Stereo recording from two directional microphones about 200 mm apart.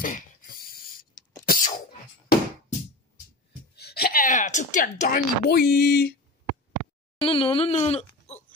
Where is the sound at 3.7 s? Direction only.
55° left (ahead or behind).